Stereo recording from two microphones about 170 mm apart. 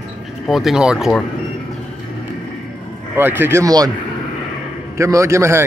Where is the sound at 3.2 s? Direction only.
15° right (ahead or behind).